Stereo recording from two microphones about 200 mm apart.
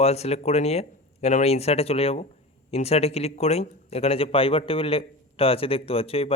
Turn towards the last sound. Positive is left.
turn(degrees=30)  # may be behind; listen again after turning